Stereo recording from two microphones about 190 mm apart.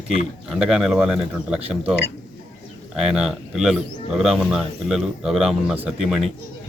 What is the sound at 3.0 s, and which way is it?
Speech, 5° right (ahead or behind).